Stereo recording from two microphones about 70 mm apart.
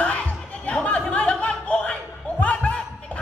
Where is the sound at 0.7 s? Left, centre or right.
Centre.